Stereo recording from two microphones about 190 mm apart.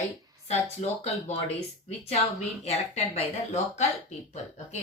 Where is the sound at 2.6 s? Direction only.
35° left (ahead or behind).